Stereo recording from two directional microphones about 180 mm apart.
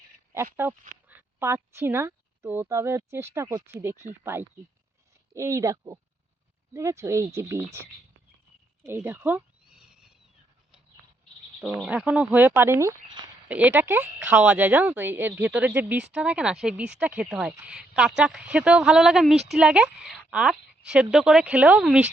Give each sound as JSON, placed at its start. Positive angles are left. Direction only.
{"t": 0.6, "sound": "a woman's voice", "side_deg": -10}
{"t": 8.9, "sound": "a sound", "side_deg": -10}
{"t": 11.6, "sound": "a woman's voice", "side_deg": -5}
{"t": 13.5, "sound": "a woman's voice", "side_deg": -10}